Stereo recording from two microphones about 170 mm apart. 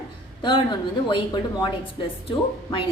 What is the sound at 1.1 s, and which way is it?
Speech, 25° left (ahead or behind).